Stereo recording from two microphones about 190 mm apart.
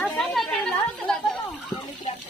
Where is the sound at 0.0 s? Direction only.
Centre (ahead or behind).